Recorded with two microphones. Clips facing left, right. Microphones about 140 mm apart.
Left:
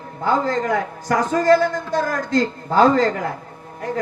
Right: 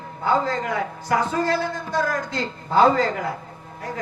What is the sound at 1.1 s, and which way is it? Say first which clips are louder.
A man's voice: left 6 dB; 40° left (ahead or behind).